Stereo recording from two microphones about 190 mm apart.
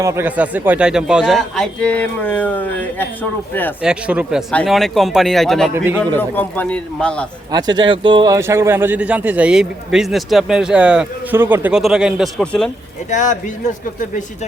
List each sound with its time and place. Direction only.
0.0 s speech: 15° right (ahead or behind); by 3.8 s 10° left (ahead or behind)
3.8 s speech: 5° right (ahead or behind)
5.7 s a man's voice: 10° right (ahead or behind)
6.1 s speech: 10° left (ahead or behind)
7.5 s a man's voice: 20° right (ahead or behind); by 12.7 s 5° left (ahead or behind)
13.1 s speech: 40° left (ahead or behind)